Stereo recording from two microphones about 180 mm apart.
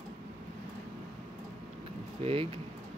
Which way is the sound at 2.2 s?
30° right (ahead or behind).